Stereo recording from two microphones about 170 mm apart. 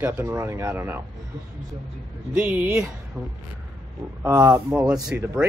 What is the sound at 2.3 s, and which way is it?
Speech, 10° right (ahead or behind).